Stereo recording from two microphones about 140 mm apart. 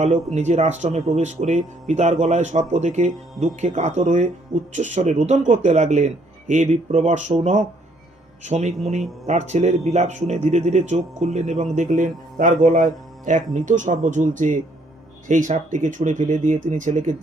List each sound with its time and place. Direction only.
0.0 s speech: 55° right (ahead or behind)